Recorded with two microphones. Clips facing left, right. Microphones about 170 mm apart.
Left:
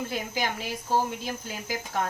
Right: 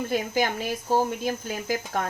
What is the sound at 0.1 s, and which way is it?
Speech, 50° right (ahead or behind).